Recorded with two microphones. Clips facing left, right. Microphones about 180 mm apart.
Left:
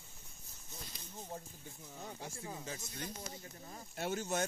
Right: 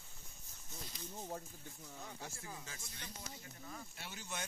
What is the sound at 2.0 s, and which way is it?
Speech, 25° left (ahead or behind).